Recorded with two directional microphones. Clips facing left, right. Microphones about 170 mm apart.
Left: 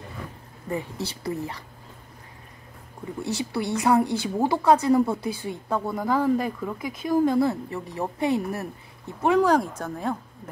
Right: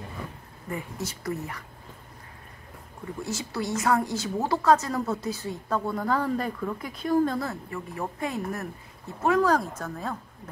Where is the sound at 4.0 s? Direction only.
60° left (ahead or behind).